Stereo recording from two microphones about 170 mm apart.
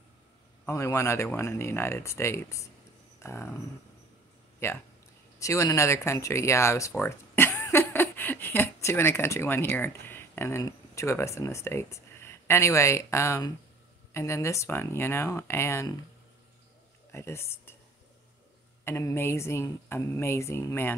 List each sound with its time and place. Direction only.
0.7 s speech: 15° left (ahead or behind)
4.6 s speech: 15° left (ahead or behind)
17.1 s speech: 15° left (ahead or behind)
18.9 s speech: 15° left (ahead or behind)